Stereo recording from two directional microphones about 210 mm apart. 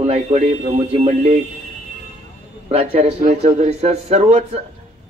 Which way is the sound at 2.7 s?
30° right (ahead or behind).